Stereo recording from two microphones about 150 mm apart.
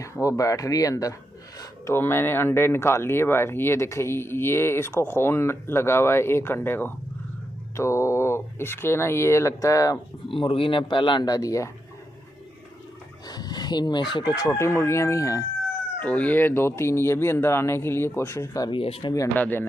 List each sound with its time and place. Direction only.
0.0 s speech: 20° left (ahead or behind)
10.2 s speech: 35° left (ahead or behind)
13.3 s speech: 25° left (ahead or behind)
16.0 s speech: 10° left (ahead or behind)
18.7 s speech: 40° left (ahead or behind)
19.1 s speech: 10° left (ahead or behind)